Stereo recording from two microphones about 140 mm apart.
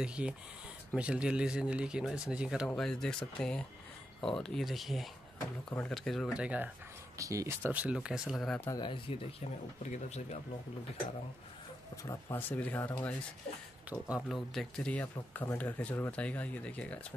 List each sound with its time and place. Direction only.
0.0 s speech: 5° right (ahead or behind)
2.7 s speech: 5° left (ahead or behind)
7.2 s speech: 25° right (ahead or behind); by 8.5 s 5° right (ahead or behind)
8.5 s speech: 10° left (ahead or behind)
8.7 s speech: 35° left (ahead or behind)
9.8 s speech: 55° left (ahead or behind)
12.0 s speech: 20° left (ahead or behind)
13.8 s speech: 5° right (ahead or behind); by 17.0 s 10° left (ahead or behind)